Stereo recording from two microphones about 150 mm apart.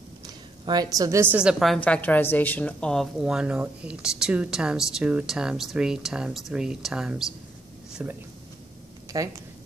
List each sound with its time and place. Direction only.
0.7 s a woman's voice: 25° right (ahead or behind); by 7.2 s 5° right (ahead or behind)
7.9 s a sound: 10° right (ahead or behind)
9.1 s speech: 25° right (ahead or behind)